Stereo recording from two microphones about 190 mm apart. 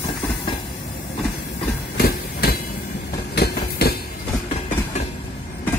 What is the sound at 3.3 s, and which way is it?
Train, 60° left (ahead or behind).